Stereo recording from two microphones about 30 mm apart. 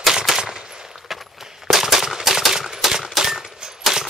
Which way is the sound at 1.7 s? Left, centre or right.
Centre.